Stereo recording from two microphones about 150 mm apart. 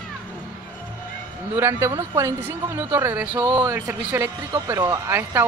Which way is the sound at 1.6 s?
15° right (ahead or behind).